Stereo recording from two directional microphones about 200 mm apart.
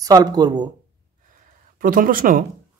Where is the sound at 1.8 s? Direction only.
45° right (ahead or behind).